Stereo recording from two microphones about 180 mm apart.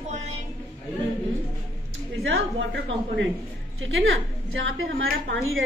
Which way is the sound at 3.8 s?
90° right.